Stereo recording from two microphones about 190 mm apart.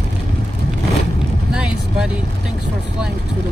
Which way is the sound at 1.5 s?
5° right (ahead or behind).